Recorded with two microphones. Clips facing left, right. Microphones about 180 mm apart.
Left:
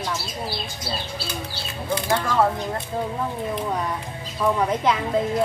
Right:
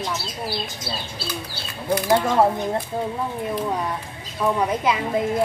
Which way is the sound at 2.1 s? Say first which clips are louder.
Right 3 dB; 25° right (ahead or behind).